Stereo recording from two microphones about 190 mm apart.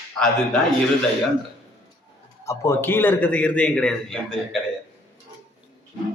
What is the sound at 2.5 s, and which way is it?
Speech, 15° left (ahead or behind).